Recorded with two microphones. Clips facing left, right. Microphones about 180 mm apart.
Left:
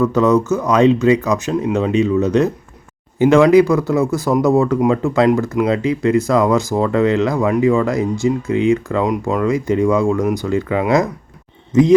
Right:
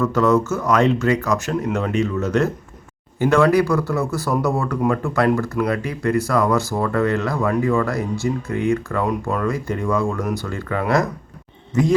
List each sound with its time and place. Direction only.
0.0 s speech: 20° left (ahead or behind)